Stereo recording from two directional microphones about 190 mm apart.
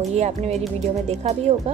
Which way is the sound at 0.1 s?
35° right (ahead or behind).